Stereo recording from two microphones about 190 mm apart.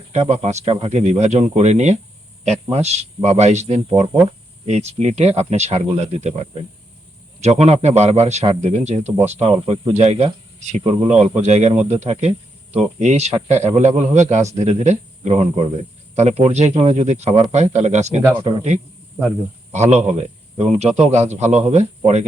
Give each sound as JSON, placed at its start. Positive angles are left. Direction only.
{"t": 0.1, "sound": "a man's voice", "side_deg": -35}
{"t": 9.5, "sound": "a man's voice", "side_deg": -25}
{"t": 18.3, "sound": "speech", "side_deg": -25}
{"t": 19.9, "sound": "a man's voice", "side_deg": -35}